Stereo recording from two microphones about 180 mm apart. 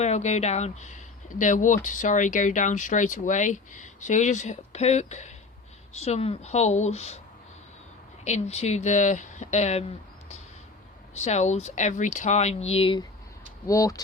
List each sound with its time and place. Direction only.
0.0 s speech: 40° left (ahead or behind)
8.2 s speech: 40° left (ahead or behind)
13.7 s speech: 20° left (ahead or behind)